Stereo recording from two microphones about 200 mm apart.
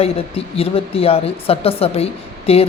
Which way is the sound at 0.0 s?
30° left (ahead or behind).